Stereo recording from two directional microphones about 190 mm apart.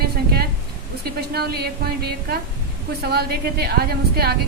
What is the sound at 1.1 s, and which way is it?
A woman's voice, 55° right (ahead or behind).